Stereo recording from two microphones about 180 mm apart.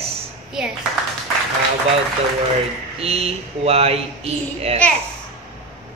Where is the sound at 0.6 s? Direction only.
5° right (ahead or behind).